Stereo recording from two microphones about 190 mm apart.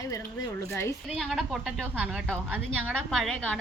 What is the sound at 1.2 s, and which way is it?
A woman's voice, centre (ahead or behind).